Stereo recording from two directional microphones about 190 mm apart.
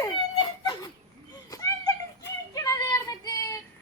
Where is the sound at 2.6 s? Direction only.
15° left (ahead or behind).